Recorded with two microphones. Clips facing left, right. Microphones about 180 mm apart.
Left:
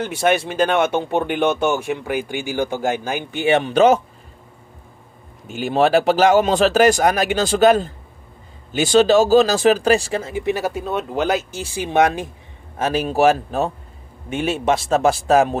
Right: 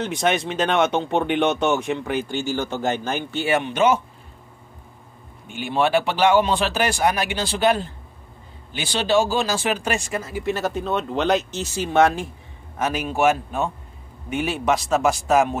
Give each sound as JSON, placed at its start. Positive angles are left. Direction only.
{"t": 0.0, "sound": "speech", "side_deg": 5}
{"t": 3.5, "sound": "a man's voice", "side_deg": 35}
{"t": 5.5, "sound": "a man's voice", "side_deg": 40}
{"t": 12.7, "sound": "a man's voice", "side_deg": 30}